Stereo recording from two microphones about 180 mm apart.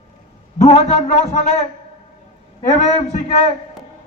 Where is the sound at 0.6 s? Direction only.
35° left (ahead or behind).